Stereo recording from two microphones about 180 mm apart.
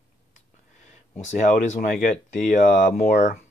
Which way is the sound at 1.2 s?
40° left (ahead or behind).